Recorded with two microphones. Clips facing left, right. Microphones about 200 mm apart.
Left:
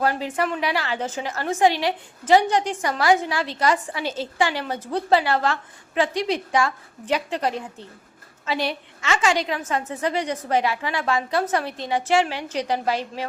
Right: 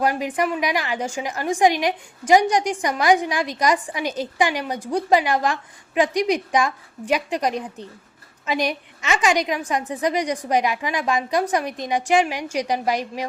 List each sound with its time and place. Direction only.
0.0 s a woman's voice: 15° right (ahead or behind)